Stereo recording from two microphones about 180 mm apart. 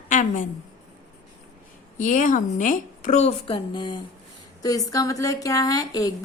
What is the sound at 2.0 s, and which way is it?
A woman's voice, 45° left (ahead or behind).